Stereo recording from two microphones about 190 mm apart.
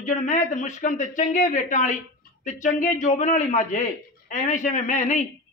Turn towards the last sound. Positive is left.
turn(degrees=40)  # may be behind; listen again after turning